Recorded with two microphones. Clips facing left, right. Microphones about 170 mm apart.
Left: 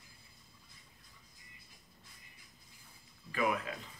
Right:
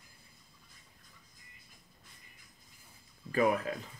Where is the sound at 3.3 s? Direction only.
40° right (ahead or behind).